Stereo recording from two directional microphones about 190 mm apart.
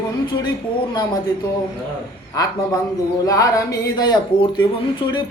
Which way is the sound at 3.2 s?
20° left (ahead or behind).